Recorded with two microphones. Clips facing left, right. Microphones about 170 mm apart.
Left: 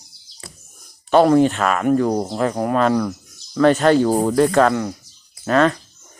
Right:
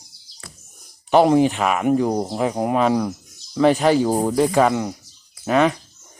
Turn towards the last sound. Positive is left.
turn(degrees=-10)  # may be behind; listen again after turning